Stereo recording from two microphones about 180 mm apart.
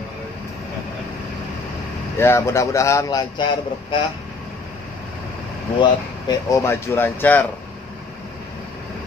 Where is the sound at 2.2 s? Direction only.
15° left (ahead or behind).